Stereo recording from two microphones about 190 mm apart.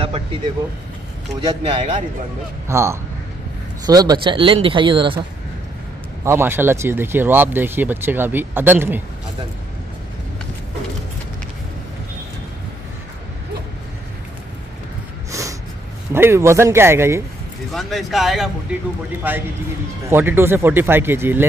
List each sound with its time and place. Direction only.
0.0 s speech: 30° right (ahead or behind)
1.4 s speech: 25° right (ahead or behind)
2.7 s speech: 15° right (ahead or behind)
6.2 s speech: 10° right (ahead or behind)
16.1 s speech: 15° right (ahead or behind)
17.7 s speech: centre (ahead or behind)